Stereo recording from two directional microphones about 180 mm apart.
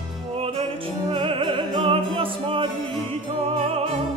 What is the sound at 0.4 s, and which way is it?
Music, 30° right (ahead or behind).